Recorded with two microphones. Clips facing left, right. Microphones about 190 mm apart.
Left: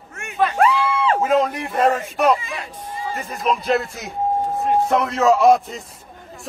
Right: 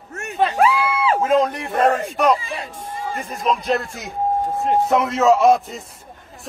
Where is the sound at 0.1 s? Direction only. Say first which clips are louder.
Right 1 dB; 40° right (ahead or behind).